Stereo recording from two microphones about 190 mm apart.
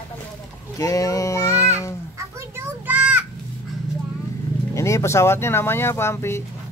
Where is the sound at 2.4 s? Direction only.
10° right (ahead or behind).